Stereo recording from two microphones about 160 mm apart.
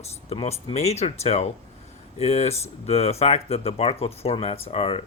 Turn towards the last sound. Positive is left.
turn(degrees=35)  # may be behind; listen again after turning